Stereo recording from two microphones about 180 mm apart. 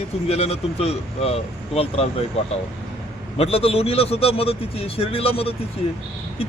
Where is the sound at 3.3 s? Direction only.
35° left (ahead or behind).